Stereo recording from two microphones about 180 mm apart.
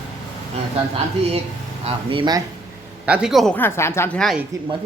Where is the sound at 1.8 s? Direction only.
30° right (ahead or behind).